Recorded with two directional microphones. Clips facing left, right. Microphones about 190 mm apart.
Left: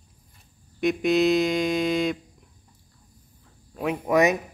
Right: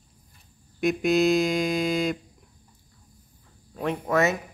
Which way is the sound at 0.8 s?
Centre (ahead or behind).